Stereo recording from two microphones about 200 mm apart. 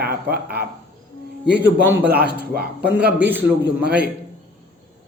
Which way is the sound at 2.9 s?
10° right (ahead or behind).